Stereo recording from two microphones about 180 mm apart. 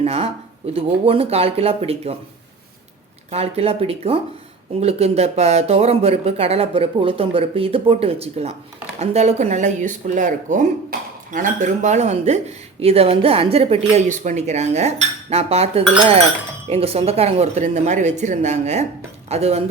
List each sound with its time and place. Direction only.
0.0 s speech: 35° right (ahead or behind)
3.2 s speech: 35° right (ahead or behind)
10.9 s speech: 55° right (ahead or behind); by 19.6 s 35° right (ahead or behind)